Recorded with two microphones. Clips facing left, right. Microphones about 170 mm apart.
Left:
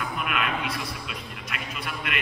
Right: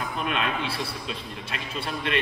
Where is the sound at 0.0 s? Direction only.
30° right (ahead or behind).